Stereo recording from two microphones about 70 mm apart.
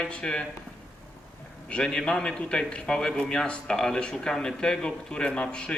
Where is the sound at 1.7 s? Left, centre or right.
Centre.